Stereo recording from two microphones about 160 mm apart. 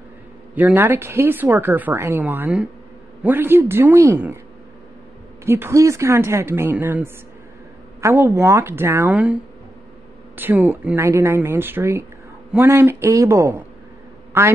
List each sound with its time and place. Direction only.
0.6 s speech: 10° right (ahead or behind)
5.4 s speech: 15° right (ahead or behind)